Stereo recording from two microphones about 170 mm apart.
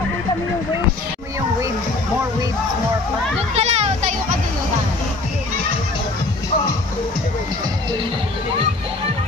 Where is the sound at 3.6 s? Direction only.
40° right (ahead or behind).